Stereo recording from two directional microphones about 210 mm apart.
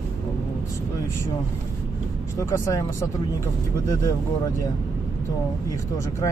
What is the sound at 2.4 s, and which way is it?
Speech, 15° left (ahead or behind).